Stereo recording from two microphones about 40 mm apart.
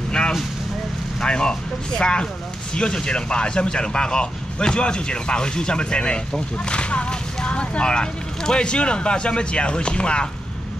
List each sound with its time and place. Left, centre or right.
1.2 s speech: left